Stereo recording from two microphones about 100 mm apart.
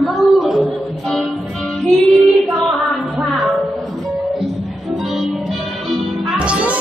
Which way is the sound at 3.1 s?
Centre (ahead or behind).